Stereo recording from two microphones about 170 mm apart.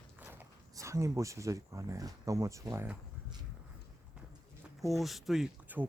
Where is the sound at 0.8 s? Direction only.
15° right (ahead or behind).